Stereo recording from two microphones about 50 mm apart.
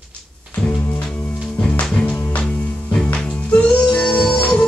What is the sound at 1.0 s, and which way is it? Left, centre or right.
Music, left.